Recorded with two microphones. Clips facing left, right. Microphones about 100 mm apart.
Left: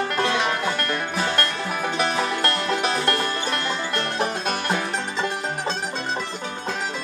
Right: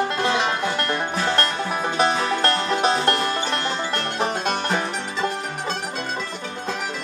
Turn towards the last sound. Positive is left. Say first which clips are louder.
# right 1 dB
turn(degrees=-30)  # may be behind; listen again after turning